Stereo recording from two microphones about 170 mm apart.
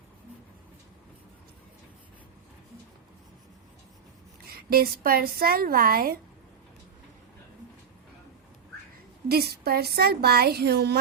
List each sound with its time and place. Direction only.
4.4 s speech: 65° right (ahead or behind)
9.3 s a woman's voice: 65° right (ahead or behind)